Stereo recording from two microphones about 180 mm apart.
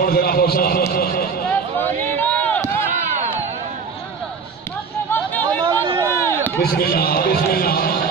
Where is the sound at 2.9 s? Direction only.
40° right (ahead or behind).